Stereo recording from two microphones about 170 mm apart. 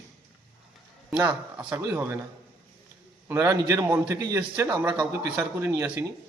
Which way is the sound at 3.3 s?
15° right (ahead or behind).